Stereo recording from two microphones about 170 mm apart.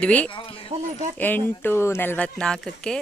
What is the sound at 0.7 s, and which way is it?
Speech, 45° right (ahead or behind).